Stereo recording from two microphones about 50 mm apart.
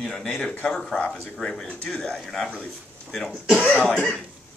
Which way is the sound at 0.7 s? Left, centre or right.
Centre.